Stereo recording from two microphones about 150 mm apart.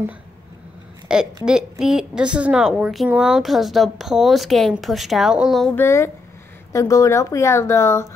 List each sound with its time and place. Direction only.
1.0 s a woman's voice: 5° right (ahead or behind)
5.8 s speech: 15° left (ahead or behind)